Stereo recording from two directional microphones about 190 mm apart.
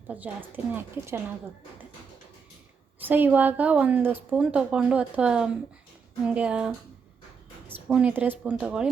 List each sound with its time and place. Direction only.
0.1 s a woman's voice: 10° right (ahead or behind)
3.0 s a woman's voice: 10° right (ahead or behind)
7.9 s a woman's voice: 10° right (ahead or behind)